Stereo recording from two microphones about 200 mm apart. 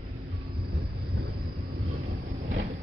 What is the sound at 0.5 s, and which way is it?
Vehicle, 50° right (ahead or behind).